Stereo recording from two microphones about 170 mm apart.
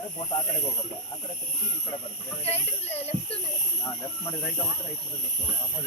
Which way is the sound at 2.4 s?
35° left (ahead or behind).